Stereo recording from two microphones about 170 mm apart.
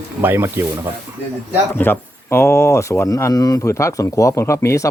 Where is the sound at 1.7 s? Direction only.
10° left (ahead or behind).